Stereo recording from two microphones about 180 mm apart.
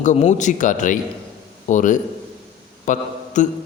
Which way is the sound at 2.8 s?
45° left (ahead or behind).